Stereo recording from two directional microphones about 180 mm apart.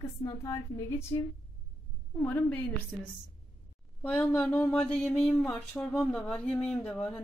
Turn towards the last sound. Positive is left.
turn(degrees=5)  # may be behind; listen again after turning